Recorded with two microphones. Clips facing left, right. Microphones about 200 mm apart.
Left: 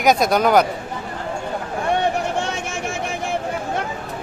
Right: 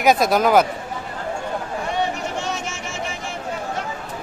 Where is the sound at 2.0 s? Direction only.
55° left (ahead or behind).